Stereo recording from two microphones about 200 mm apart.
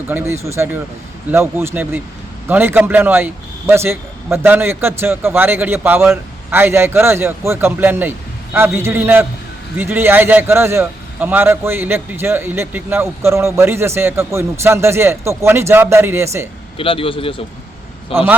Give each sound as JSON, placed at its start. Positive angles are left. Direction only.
{"t": 0.1, "sound": "a man's voice", "side_deg": -10}
{"t": 16.7, "sound": "a man's voice", "side_deg": 25}